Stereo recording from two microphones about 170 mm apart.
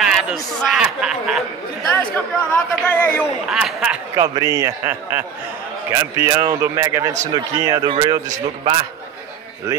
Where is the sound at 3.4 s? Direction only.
5° right (ahead or behind).